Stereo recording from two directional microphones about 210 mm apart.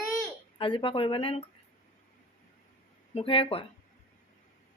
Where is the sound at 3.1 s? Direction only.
25° left (ahead or behind).